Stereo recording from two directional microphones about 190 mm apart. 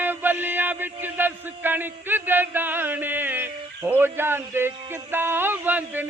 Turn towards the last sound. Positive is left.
turn(degrees=-10)  # may be behind; listen again after turning